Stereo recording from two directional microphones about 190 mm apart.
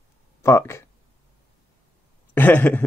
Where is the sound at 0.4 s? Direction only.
15° left (ahead or behind).